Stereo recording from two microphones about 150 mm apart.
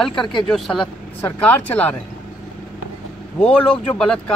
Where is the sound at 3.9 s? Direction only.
5° left (ahead or behind).